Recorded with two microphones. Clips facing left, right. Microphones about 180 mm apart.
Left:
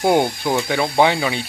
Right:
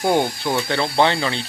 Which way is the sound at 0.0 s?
15° left (ahead or behind).